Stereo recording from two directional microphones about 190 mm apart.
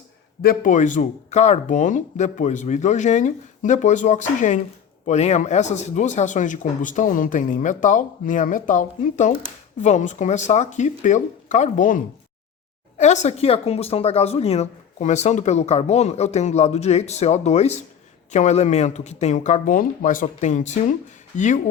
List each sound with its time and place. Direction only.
0.4 s speech: 40° left (ahead or behind)